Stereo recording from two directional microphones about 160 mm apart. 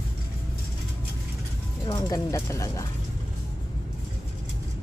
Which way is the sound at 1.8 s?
25° left (ahead or behind).